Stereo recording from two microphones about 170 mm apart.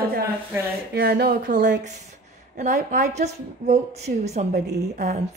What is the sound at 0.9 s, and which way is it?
Speech, 65° right (ahead or behind).